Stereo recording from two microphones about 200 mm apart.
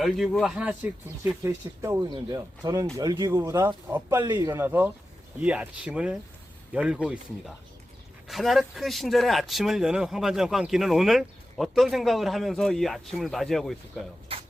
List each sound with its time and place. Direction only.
0.0 s speech: centre (ahead or behind)
8.3 s speech: centre (ahead or behind)
14.3 s a sound: 25° right (ahead or behind)